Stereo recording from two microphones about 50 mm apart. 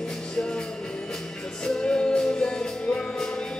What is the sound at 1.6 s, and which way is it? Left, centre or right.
Music, centre.